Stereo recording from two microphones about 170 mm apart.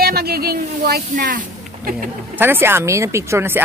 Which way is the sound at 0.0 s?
65° right (ahead or behind).